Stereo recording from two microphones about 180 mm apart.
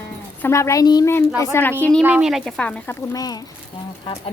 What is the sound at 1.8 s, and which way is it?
Speech, 5° left (ahead or behind).